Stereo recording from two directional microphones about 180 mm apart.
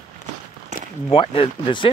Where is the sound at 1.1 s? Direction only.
30° left (ahead or behind).